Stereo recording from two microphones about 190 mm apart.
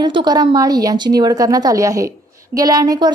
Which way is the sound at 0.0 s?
25° right (ahead or behind).